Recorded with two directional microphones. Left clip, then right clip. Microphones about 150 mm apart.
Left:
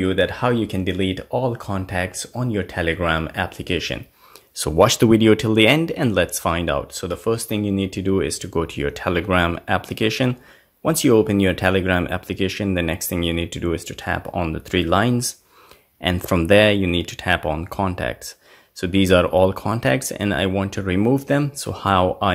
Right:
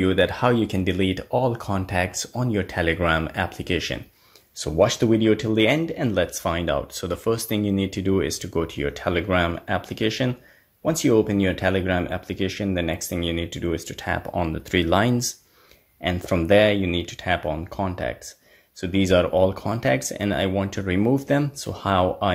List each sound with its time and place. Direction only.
0.0 s speech: centre (ahead or behind)
4.6 s speech: 40° left (ahead or behind); by 15.3 s 10° left (ahead or behind)
16.0 s speech: 30° left (ahead or behind)